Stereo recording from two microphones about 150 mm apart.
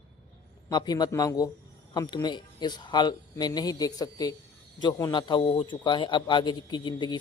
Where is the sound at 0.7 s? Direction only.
25° left (ahead or behind).